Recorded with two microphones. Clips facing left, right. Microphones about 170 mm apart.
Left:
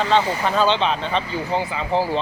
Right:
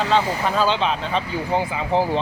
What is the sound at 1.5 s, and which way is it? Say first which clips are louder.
Speech: right 1 dB; 15° right (ahead or behind).